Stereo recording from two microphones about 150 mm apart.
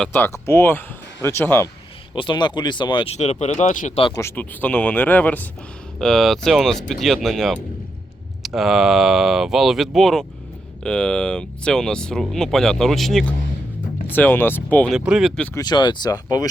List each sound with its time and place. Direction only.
0.0 s speech: 15° left (ahead or behind)
2.1 s speech: 30° left (ahead or behind)
3.1 s speech: 50° left (ahead or behind)
4.1 s speech: 20° left (ahead or behind); by 13.2 s centre (ahead or behind)
14.1 s speech: 15° left (ahead or behind)
14.9 s speech: 5° right (ahead or behind)
15.5 s speech: 30° left (ahead or behind)